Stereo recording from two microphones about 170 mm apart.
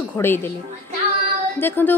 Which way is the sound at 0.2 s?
10° left (ahead or behind).